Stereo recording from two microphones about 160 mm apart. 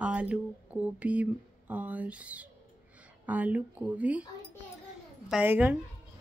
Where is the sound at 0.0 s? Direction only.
10° right (ahead or behind).